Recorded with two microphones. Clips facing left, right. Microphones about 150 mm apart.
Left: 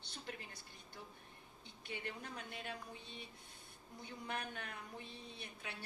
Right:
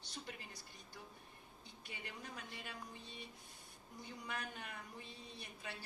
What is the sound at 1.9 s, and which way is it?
A man's voice, 60° left (ahead or behind).